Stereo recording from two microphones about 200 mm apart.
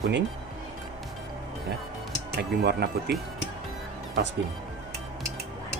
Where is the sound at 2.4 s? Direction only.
50° right (ahead or behind).